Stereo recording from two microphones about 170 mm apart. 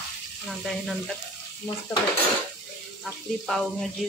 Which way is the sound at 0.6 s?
Centre (ahead or behind).